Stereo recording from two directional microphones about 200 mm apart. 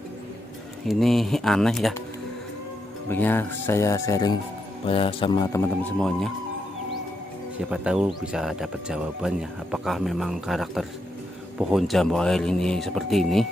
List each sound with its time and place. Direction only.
0.8 s speech: centre (ahead or behind)
3.1 s speech: 10° left (ahead or behind)
5.9 s speech: 5° left (ahead or behind)
7.5 s speech: 5° right (ahead or behind)